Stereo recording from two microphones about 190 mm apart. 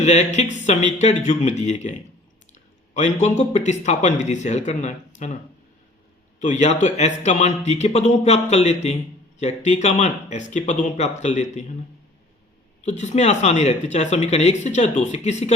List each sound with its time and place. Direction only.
0.0 s speech: 35° left (ahead or behind)
6.4 s speech: 40° left (ahead or behind)
12.8 s speech: 40° left (ahead or behind)